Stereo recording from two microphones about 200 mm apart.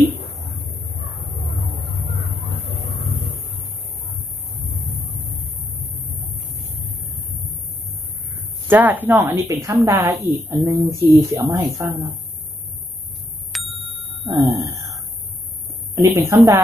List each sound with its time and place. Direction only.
8.6 s speech: 10° right (ahead or behind)
13.5 s bicycle bell: centre (ahead or behind)
14.2 s a sound: 25° right (ahead or behind)
15.9 s speech: 15° right (ahead or behind)